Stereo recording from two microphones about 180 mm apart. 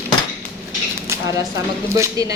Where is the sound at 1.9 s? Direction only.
20° right (ahead or behind).